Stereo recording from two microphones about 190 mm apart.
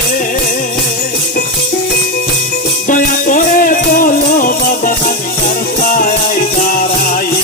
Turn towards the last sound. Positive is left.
turn(degrees=45)  # may be behind; listen again after turning